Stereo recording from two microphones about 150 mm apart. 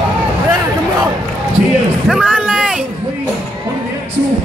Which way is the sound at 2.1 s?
5° right (ahead or behind).